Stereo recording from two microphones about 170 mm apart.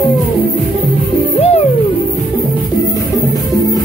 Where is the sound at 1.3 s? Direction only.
35° left (ahead or behind).